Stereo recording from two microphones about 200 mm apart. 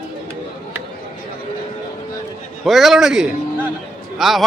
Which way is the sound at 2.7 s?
Centre (ahead or behind).